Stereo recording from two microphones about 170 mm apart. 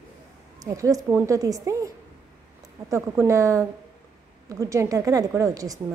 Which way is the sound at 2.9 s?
15° right (ahead or behind).